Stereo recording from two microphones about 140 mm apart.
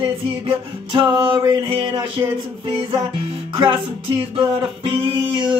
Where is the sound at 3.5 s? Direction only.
40° right (ahead or behind).